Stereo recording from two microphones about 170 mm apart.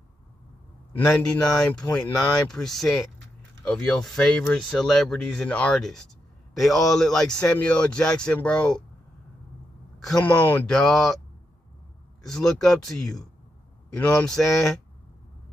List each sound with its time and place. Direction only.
0.9 s speech: 5° left (ahead or behind)
10.0 s speech: 5° left (ahead or behind)
12.2 s a man's voice: 5° left (ahead or behind)